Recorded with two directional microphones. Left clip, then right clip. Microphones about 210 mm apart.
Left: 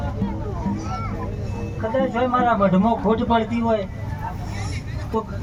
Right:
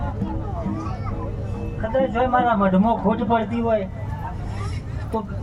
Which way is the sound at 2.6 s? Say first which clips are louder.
Even; 25° left (ahead or behind).